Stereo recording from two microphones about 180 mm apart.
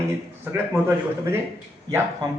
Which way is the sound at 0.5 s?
10° right (ahead or behind).